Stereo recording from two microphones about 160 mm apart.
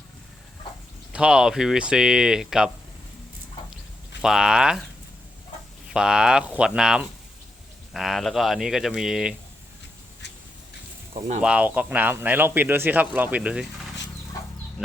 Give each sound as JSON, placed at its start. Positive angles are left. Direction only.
{"t": 1.1, "sound": "speech", "side_deg": -5}
{"t": 4.2, "sound": "speech", "side_deg": -5}
{"t": 5.9, "sound": "speech", "side_deg": -5}
{"t": 11.1, "sound": "speech", "side_deg": -50}
{"t": 11.4, "sound": "speech", "side_deg": -10}